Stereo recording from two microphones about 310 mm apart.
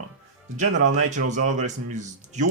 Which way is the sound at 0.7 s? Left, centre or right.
Right.